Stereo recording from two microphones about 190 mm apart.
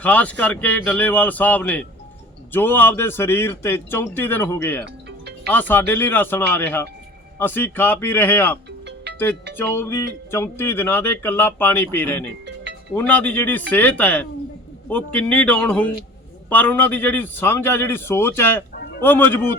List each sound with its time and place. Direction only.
0.0 s speech: 5° left (ahead or behind)
9.6 s speech: 10° left (ahead or behind)
18.8 s a sound: 55° left (ahead or behind)
19.0 s speech: 10° left (ahead or behind)